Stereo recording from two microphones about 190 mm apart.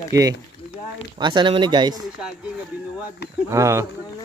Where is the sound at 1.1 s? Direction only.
25° right (ahead or behind).